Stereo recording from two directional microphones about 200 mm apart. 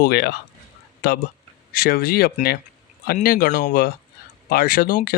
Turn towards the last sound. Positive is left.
turn(degrees=45)  # may be behind; listen again after turning